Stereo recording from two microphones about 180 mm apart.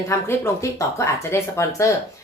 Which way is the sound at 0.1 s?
15° left (ahead or behind).